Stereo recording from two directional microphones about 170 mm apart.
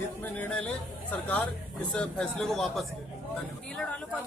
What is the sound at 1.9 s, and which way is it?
Speech, 5° left (ahead or behind).